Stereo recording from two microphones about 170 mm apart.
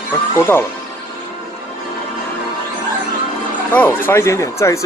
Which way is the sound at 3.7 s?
10° left (ahead or behind).